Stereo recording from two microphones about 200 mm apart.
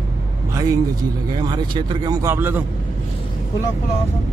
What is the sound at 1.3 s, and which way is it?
Speech, 20° right (ahead or behind).